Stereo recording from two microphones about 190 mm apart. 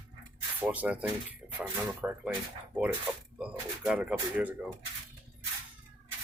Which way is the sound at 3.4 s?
5° right (ahead or behind).